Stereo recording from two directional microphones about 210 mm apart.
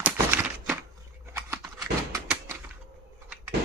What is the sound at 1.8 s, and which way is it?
Door, 15° right (ahead or behind).